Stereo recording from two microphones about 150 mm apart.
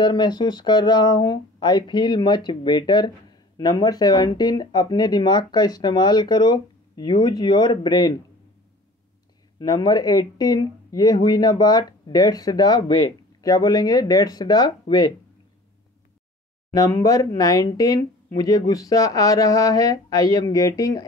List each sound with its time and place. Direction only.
0.0 s speech: 30° left (ahead or behind)
9.6 s speech: 30° left (ahead or behind)
16.7 s speech: 25° left (ahead or behind)